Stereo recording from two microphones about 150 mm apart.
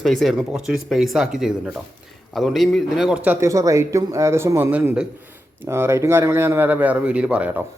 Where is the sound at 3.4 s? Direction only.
20° right (ahead or behind).